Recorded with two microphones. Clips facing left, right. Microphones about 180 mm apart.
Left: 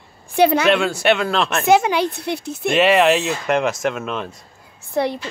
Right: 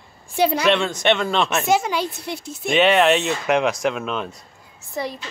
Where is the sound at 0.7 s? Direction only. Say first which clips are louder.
Left 2 dB; 10° left (ahead or behind).